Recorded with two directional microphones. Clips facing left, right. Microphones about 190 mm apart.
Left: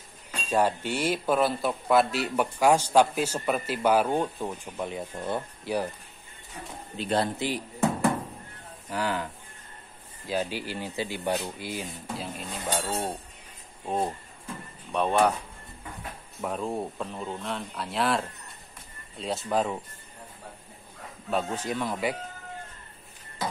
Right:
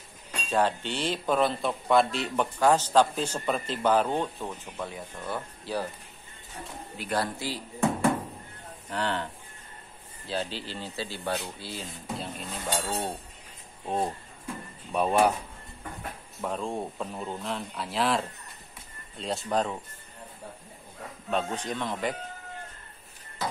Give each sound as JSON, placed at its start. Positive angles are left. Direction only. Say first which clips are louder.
{"t": 0.5, "sound": "speech", "louder": "left 1 dB", "side_deg": 10}
{"t": 7.0, "sound": "speech", "louder": "left 4 dB", "side_deg": 25}
{"t": 8.9, "sound": "speech", "louder": "left 1 dB", "side_deg": 10}
{"t": 12.2, "sound": "speech", "louder": "left 1 dB", "side_deg": 0}
{"t": 16.3, "sound": "speech", "louder": "left 1 dB", "side_deg": 5}
{"t": 21.3, "sound": "speech", "louder": "left 1 dB", "side_deg": 5}